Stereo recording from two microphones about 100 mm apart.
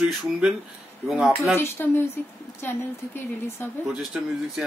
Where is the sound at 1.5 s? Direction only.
25° left (ahead or behind).